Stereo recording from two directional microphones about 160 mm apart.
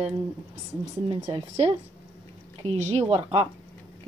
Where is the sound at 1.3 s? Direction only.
40° right (ahead or behind).